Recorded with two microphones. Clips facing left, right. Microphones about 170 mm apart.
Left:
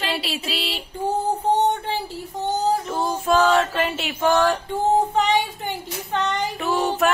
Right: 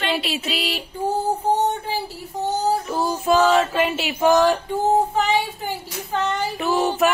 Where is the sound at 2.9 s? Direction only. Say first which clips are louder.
Right 1 dB; 5° right (ahead or behind).